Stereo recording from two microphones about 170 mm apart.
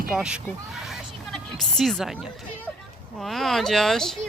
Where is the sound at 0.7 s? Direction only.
Centre (ahead or behind).